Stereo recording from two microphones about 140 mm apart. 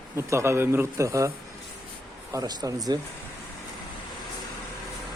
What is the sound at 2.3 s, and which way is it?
Speech, 30° right (ahead or behind).